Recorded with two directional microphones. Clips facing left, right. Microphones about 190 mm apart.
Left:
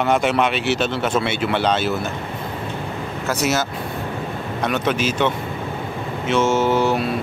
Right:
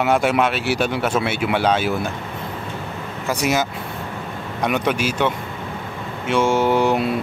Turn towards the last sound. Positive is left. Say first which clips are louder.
# right 1 dB
turn(degrees=-15)  # may be behind; listen again after turning